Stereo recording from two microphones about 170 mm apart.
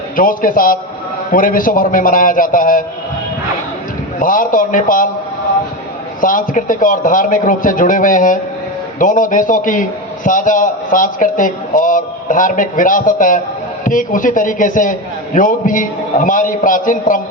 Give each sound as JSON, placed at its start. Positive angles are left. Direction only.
{"t": 0.2, "sound": "a man's voice", "side_deg": 55}
{"t": 4.2, "sound": "a man's voice", "side_deg": 50}
{"t": 6.2, "sound": "a man's voice", "side_deg": 50}